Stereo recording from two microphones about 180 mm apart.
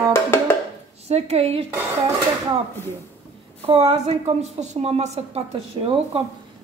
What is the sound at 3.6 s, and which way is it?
A woman's voice, 35° right (ahead or behind).